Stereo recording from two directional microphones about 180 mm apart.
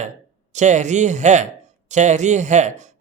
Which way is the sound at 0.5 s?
40° right (ahead or behind).